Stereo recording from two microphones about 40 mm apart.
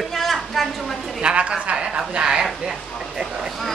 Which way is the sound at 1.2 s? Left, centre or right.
Right.